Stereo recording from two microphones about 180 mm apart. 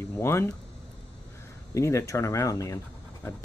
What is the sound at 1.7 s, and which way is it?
Speech, 15° left (ahead or behind).